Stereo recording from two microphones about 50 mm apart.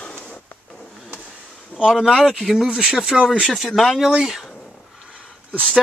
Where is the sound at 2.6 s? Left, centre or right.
Centre.